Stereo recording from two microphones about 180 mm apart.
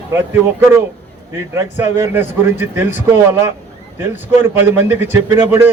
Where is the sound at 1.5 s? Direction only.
10° right (ahead or behind).